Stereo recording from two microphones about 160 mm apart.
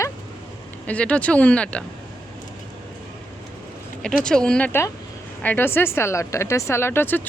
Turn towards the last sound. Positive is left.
turn(degrees=15)  # may be behind; listen again after turning